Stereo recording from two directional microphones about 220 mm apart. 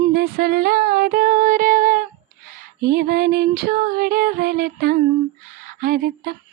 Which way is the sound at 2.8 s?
45° right (ahead or behind).